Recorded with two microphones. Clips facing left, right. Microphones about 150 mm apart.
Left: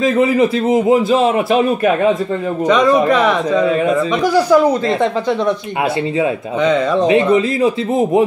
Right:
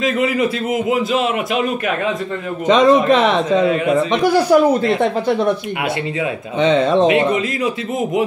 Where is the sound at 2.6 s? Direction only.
20° right (ahead or behind).